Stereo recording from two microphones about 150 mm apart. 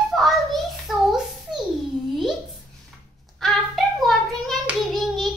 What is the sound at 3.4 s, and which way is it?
Hands, centre (ahead or behind).